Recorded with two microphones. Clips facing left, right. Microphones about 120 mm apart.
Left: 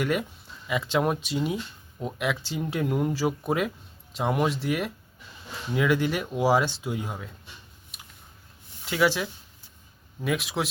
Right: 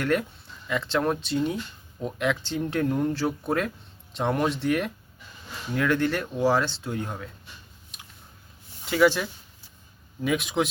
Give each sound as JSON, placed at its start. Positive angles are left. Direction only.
{"t": 0.0, "sound": "speech", "side_deg": 10}
{"t": 8.9, "sound": "speech", "side_deg": 0}